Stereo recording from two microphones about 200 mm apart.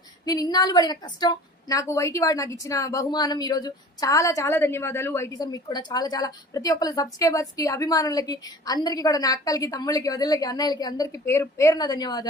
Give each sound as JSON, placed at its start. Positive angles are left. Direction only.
{"t": 0.3, "sound": "a woman's voice", "side_deg": 20}